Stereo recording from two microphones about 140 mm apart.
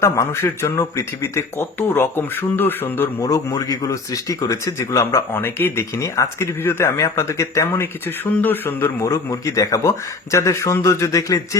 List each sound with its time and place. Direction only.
0.0 s speech: 20° left (ahead or behind)